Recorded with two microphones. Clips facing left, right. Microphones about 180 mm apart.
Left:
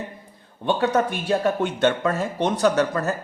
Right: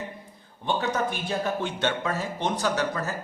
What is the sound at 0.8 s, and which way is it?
Speech, 60° left (ahead or behind).